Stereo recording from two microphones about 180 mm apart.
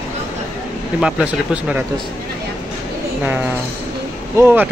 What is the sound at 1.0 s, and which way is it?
Speech, 5° right (ahead or behind).